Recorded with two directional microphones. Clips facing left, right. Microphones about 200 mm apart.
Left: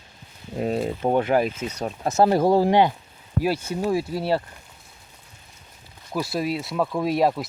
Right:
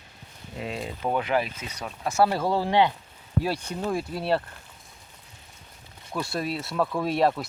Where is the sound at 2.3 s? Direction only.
15° left (ahead or behind).